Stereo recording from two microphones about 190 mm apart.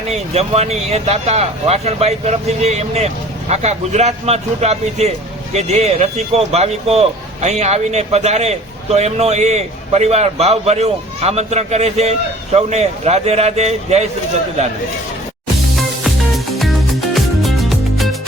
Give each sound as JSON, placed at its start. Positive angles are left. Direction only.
{"t": 0.1, "sound": "speech", "side_deg": -35}
{"t": 17.2, "sound": "music", "side_deg": 0}